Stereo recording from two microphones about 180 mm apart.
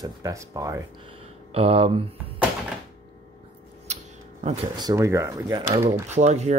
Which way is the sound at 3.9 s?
40° right (ahead or behind).